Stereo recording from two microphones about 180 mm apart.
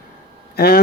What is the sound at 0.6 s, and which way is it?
Speech, 60° left (ahead or behind).